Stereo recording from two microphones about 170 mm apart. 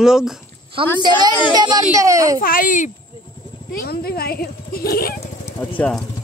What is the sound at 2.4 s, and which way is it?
Speech, 55° left (ahead or behind).